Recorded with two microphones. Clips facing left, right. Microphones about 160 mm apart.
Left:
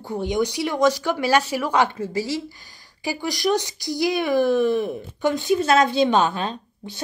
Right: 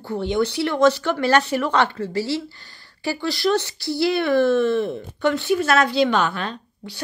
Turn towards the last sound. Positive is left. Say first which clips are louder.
# left 1 dB
turn(degrees=20)  # may be behind; listen again after turning